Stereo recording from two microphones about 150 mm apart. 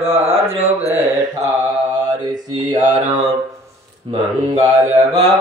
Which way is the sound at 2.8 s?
55° right (ahead or behind).